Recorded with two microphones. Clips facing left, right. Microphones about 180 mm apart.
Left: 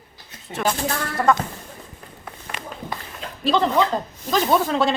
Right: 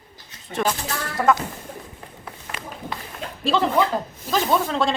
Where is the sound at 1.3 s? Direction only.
5° right (ahead or behind).